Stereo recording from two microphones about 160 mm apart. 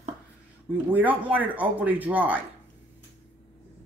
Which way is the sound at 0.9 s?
10° right (ahead or behind).